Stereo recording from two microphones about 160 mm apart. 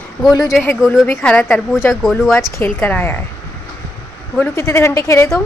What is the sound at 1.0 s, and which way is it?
Speech, 10° left (ahead or behind).